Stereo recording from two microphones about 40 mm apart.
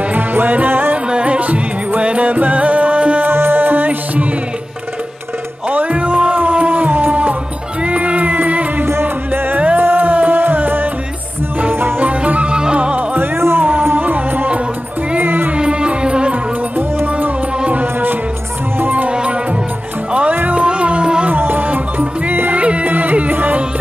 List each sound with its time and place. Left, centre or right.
0.1 s music: right
1.1 s music: right
3.3 s music: right
5.7 s music: right
7.8 s music: right
9.0 s music: right
12.4 s music: right
13.2 s music: right
13.9 s music: right
15.5 s music: right
16.7 s music: right
19.0 s music: right
21.3 s music: right
22.5 s music: right